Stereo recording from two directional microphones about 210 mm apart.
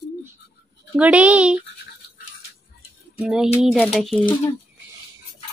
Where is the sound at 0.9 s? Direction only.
5° right (ahead or behind).